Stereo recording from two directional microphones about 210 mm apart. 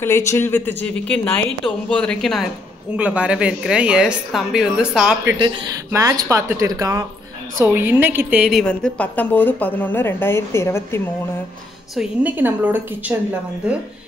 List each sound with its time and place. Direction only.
0.0 s a woman's voice: 10° left (ahead or behind); by 5.3 s 5° right (ahead or behind)
5.9 s a woman's voice: 15° right (ahead or behind); by 11.0 s 10° left (ahead or behind)
11.9 s a woman's voice: 5° right (ahead or behind)